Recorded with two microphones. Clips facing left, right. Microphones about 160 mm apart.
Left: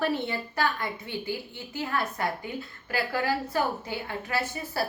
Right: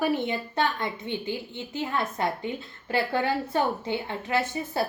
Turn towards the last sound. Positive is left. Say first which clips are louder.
# right 4 dB
turn(degrees=-20)  # may be behind; listen again after turning